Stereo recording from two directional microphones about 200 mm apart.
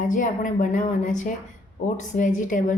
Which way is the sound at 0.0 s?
40° left (ahead or behind).